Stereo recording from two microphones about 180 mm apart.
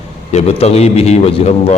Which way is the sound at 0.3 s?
40° left (ahead or behind).